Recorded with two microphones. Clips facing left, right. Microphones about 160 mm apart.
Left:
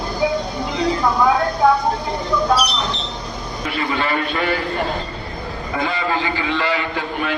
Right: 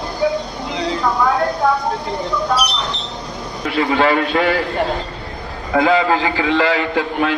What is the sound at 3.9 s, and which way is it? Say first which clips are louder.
Speech: right 7 dB; 90° right.